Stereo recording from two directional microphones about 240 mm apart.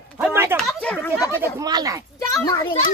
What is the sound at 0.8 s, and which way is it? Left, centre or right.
Speech, centre.